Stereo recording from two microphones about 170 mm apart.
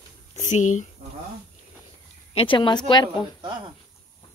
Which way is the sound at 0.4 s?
45° left (ahead or behind).